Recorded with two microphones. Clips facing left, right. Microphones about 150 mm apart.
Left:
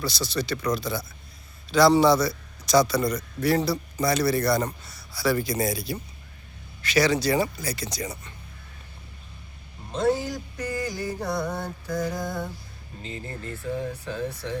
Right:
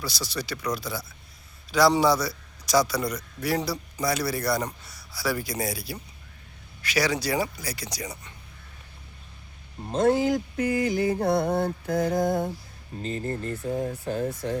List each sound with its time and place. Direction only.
0.0 s speech: 10° right (ahead or behind)
9.9 s music: 55° right (ahead or behind)
13.0 s speech: 45° right (ahead or behind)